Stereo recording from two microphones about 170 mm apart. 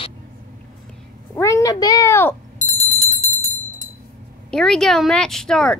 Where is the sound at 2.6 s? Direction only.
40° left (ahead or behind).